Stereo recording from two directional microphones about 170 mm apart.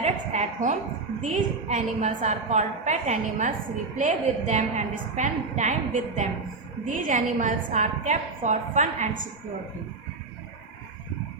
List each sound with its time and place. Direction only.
0.0 s a woman's voice: 45° right (ahead or behind)